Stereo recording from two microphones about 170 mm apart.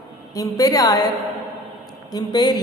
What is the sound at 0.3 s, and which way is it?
Speech, 20° left (ahead or behind).